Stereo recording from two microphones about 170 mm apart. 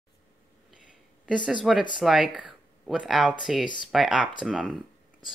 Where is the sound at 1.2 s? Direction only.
5° right (ahead or behind).